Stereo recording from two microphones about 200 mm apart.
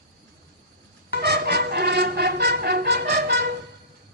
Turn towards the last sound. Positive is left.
turn(degrees=-55)  # may be behind; listen again after turning